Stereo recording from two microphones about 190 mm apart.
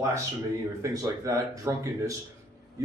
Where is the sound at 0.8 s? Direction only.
15° right (ahead or behind).